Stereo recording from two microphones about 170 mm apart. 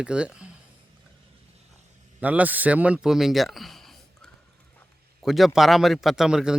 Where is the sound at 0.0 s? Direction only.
5° right (ahead or behind).